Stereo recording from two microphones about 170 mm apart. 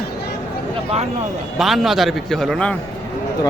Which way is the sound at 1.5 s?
Centre (ahead or behind).